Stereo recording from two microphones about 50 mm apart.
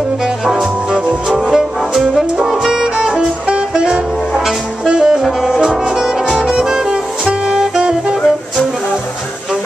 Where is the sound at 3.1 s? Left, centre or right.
Centre.